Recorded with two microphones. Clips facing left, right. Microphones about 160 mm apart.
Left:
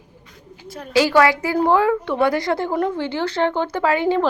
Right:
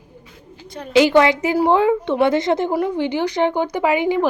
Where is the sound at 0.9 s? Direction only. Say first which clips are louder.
Right 2 dB; 20° right (ahead or behind).